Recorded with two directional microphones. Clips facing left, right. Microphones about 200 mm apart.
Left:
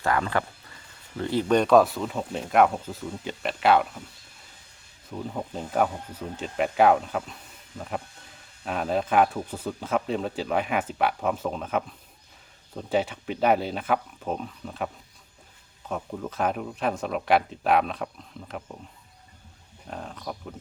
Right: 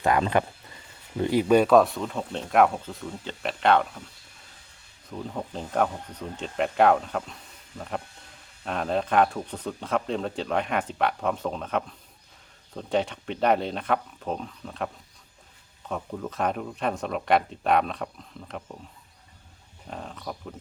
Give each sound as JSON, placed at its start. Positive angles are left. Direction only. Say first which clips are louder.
{"t": 0.0, "sound": "speech", "louder": "right 3 dB", "side_deg": -20}
{"t": 5.0, "sound": "speech", "louder": "left 1 dB", "side_deg": 5}
{"t": 15.9, "sound": "speech", "louder": "even", "side_deg": 0}
{"t": 19.9, "sound": "speech", "louder": "left 1 dB", "side_deg": 0}